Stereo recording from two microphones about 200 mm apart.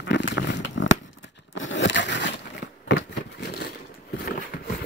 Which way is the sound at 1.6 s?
70° left (ahead or behind).